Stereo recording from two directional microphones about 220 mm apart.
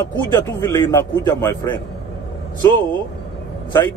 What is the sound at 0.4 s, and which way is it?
A man's voice, 15° left (ahead or behind).